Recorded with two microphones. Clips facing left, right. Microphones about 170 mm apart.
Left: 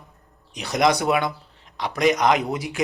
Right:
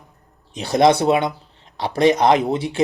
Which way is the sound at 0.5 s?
30° right (ahead or behind).